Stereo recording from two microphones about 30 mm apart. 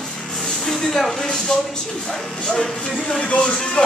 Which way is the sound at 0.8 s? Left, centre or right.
Centre.